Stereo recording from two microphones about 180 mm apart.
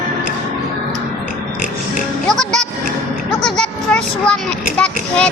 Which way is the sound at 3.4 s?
5° left (ahead or behind).